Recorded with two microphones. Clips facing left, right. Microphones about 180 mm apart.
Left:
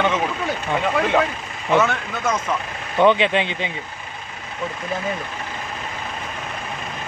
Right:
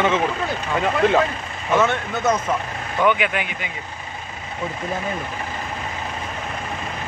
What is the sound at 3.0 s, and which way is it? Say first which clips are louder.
Speech: left 4 dB; 30° left (ahead or behind).